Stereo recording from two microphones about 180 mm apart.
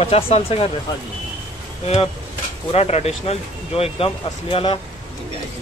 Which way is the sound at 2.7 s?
35° left (ahead or behind).